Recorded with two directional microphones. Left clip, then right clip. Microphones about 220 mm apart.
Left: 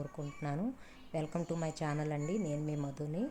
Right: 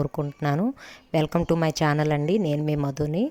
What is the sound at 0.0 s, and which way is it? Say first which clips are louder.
Speech: right 15 dB; 45° right (ahead or behind).